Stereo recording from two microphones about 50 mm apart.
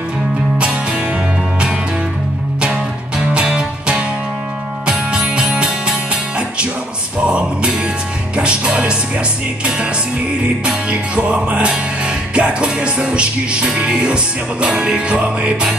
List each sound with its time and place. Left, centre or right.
3.3 s music: centre
7.2 s music: right
10.6 s music: right